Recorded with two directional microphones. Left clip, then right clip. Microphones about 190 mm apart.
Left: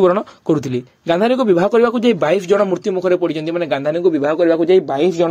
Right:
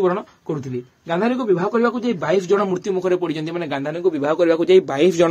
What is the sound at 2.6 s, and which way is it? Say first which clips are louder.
A man's voice: left 4 dB; 25° left (ahead or behind).